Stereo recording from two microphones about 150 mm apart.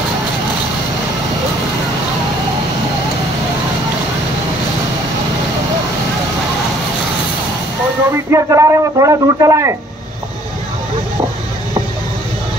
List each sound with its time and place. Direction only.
8.3 s speech: 20° right (ahead or behind)